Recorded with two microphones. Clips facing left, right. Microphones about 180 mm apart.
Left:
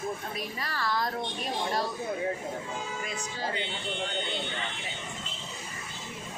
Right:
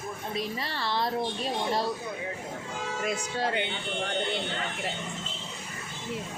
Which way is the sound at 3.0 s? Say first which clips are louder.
Right 5 dB; 65° right (ahead or behind).